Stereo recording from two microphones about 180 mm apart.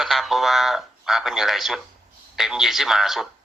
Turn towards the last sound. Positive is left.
turn(degrees=0)  # may be behind; listen again after turning